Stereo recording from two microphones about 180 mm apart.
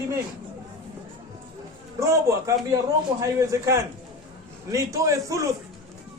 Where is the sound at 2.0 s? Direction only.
15° right (ahead or behind).